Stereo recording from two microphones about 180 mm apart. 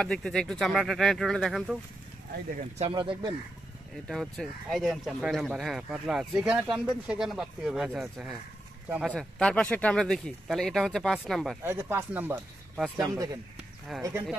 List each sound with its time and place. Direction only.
0.0 s speech: 5° left (ahead or behind)
2.8 s speech: 30° right (ahead or behind)
3.9 s speech: centre (ahead or behind)
9.1 s speech: 5° left (ahead or behind)
11.6 s speech: 10° right (ahead or behind)
13.1 s speech: 20° right (ahead or behind)
13.9 s speech: centre (ahead or behind)